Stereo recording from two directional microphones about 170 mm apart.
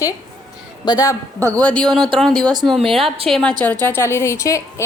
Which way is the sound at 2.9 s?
Centre (ahead or behind).